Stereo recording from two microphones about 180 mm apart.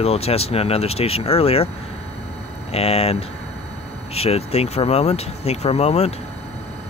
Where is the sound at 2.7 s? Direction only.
35° left (ahead or behind).